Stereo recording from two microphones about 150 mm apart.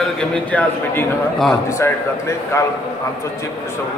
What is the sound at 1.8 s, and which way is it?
Speech, 20° left (ahead or behind).